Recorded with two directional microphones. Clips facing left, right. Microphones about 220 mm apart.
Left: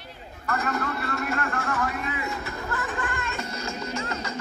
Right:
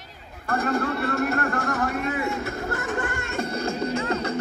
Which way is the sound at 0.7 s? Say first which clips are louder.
Right 5 dB; 30° right (ahead or behind).